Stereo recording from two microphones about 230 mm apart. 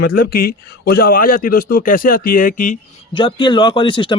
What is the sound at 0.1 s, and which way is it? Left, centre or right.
Speech, left.